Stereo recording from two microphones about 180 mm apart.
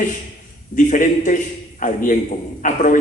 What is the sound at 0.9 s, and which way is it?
A man's voice, 45° left (ahead or behind).